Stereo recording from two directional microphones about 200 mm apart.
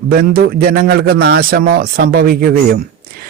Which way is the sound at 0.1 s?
50° right (ahead or behind).